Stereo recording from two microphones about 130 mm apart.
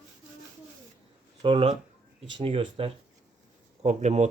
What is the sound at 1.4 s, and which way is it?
Speech, 40° right (ahead or behind).